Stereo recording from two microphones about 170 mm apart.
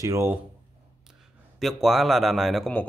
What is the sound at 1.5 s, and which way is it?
Speech, centre (ahead or behind).